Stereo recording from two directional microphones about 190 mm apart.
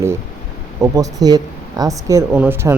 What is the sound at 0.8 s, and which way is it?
A woman's voice, 20° right (ahead or behind).